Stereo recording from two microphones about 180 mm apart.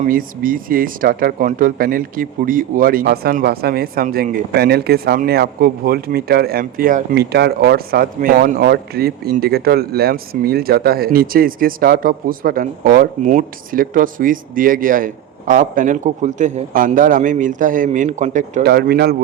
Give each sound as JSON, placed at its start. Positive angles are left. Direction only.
{"t": 0.0, "sound": "speech", "side_deg": -50}
{"t": 18.6, "sound": "speech", "side_deg": -65}